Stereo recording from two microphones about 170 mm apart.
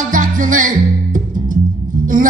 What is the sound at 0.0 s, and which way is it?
Music, 50° right (ahead or behind).